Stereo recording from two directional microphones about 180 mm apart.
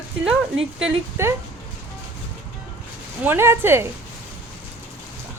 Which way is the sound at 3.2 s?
10° right (ahead or behind).